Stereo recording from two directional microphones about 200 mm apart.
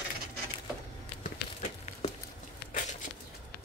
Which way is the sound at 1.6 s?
35° left (ahead or behind).